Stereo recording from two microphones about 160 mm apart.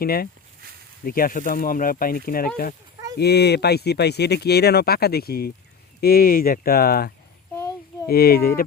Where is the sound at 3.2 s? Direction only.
90° left; by 7.1 s 70° left (ahead or behind).